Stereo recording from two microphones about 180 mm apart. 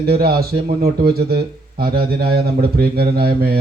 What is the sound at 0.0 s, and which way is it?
Speech, 60° right (ahead or behind).